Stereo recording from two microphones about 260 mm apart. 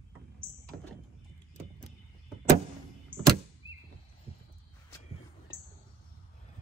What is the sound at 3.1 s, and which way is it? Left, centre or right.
Door, right.